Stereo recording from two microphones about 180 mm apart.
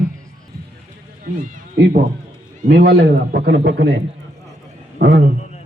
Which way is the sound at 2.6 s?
65° right (ahead or behind).